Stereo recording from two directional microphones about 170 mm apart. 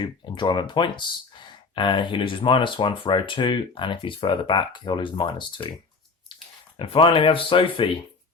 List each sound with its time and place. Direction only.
0.0 s speech: 30° left (ahead or behind)
6.7 s speech: 30° left (ahead or behind)